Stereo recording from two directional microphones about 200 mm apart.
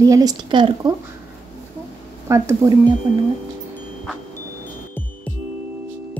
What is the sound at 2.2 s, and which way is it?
Speech, 15° right (ahead or behind).